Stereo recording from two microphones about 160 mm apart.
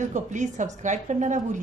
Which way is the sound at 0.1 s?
50° right (ahead or behind).